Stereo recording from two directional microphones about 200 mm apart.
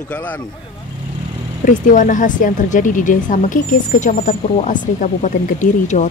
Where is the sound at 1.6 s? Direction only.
40° left (ahead or behind).